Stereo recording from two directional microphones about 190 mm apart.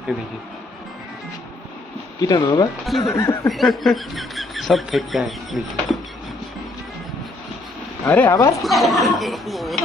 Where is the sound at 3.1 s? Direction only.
15° left (ahead or behind).